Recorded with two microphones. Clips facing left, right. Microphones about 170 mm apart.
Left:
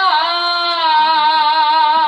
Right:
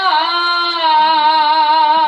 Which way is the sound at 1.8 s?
15° right (ahead or behind).